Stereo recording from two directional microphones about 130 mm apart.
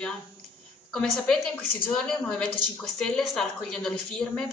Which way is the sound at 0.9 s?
5° left (ahead or behind).